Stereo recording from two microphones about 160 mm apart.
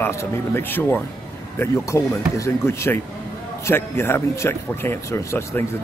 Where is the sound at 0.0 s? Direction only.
15° left (ahead or behind).